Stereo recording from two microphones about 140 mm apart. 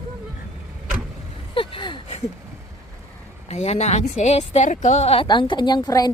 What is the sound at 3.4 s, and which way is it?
A woman's voice, 50° left (ahead or behind).